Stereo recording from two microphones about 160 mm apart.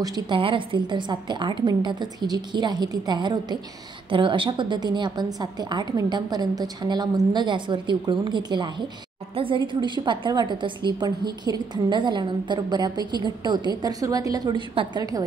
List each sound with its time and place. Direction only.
0.0 s a woman's voice: 30° right (ahead or behind)